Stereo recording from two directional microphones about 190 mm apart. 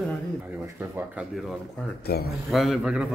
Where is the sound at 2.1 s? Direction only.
55° left (ahead or behind).